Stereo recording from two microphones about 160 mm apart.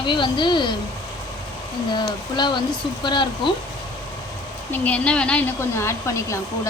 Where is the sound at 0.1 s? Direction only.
30° left (ahead or behind).